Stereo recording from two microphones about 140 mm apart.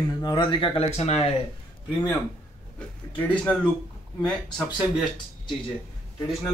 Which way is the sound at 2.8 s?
10° left (ahead or behind).